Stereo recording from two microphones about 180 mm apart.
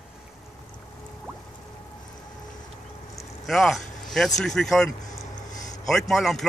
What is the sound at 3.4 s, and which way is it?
Speech, centre (ahead or behind).